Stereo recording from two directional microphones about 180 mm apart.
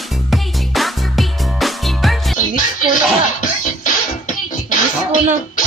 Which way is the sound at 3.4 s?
45° left (ahead or behind).